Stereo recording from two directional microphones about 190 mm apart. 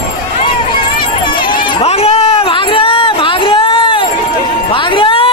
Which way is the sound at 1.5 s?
30° left (ahead or behind).